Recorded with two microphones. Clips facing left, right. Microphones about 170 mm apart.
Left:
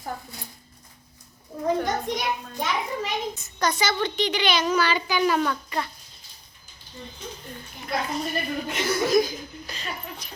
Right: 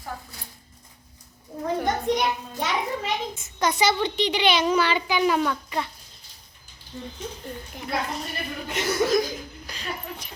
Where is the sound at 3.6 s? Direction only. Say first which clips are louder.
Right 3 dB; 20° right (ahead or behind).